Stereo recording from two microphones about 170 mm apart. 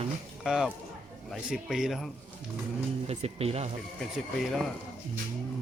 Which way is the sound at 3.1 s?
35° right (ahead or behind).